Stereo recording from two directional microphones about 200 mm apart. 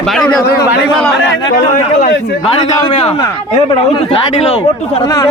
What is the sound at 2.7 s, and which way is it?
Speech, 20° left (ahead or behind).